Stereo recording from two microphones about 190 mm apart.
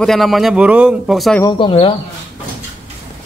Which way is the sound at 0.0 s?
Centre (ahead or behind).